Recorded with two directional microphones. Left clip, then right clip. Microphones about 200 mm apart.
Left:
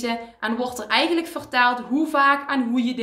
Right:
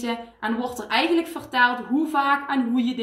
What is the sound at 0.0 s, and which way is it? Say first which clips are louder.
A woman's voice: left 2 dB; 20° left (ahead or behind).